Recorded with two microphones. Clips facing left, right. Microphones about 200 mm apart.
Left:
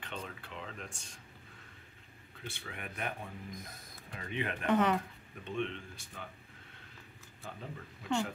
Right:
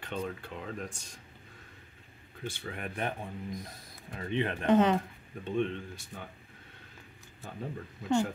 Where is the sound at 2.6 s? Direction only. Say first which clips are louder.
Right 5 dB; 35° right (ahead or behind).